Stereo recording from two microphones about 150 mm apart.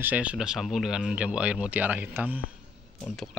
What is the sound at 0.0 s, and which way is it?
Speech, 10° right (ahead or behind).